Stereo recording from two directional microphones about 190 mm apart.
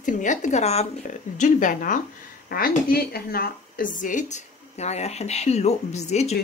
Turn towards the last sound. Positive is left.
turn(degrees=35)  # may be behind; listen again after turning